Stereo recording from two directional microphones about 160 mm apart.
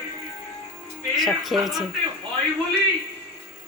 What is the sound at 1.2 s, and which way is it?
Speech, centre (ahead or behind).